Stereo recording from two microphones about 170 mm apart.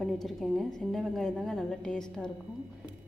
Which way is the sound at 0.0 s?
Centre (ahead or behind).